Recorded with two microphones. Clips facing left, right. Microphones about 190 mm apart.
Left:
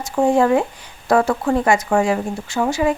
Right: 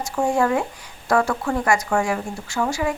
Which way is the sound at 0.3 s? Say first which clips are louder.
Left 5 dB; 20° left (ahead or behind).